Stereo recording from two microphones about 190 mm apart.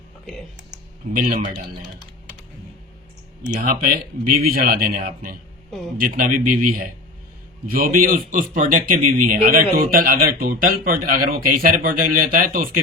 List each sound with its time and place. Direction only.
1.1 s a man's voice: 45° right (ahead or behind)
3.5 s a man's voice: 45° right (ahead or behind)